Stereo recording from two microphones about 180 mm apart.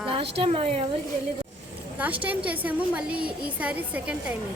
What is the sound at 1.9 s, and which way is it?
A woman's voice, 10° right (ahead or behind).